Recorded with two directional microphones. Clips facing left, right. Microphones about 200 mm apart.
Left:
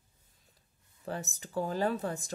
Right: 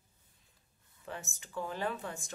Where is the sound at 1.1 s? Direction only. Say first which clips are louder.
Left 6 dB; 40° left (ahead or behind).